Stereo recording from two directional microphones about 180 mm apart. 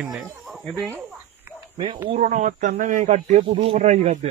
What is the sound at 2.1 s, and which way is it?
Speech, 45° right (ahead or behind).